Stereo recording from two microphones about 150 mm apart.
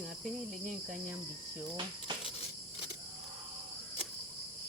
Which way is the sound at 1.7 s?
30° right (ahead or behind).